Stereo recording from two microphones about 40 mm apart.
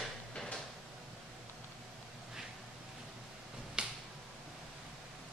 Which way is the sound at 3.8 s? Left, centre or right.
Right.